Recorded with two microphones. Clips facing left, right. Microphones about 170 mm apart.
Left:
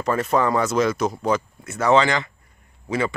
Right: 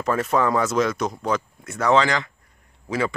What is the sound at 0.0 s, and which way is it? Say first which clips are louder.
Speech: left 1 dB; centre (ahead or behind).